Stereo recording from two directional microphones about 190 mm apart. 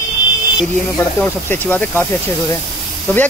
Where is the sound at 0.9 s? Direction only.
10° left (ahead or behind).